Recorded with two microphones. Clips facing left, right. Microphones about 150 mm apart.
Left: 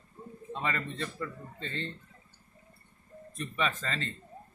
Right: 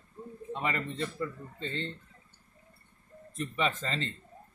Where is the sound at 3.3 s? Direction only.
25° right (ahead or behind).